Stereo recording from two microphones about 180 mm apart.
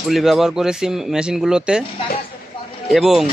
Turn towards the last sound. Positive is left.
turn(degrees=0)  # may be behind; listen again after turning